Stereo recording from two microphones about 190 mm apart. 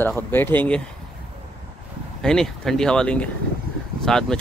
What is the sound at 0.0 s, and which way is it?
Speech, 10° left (ahead or behind).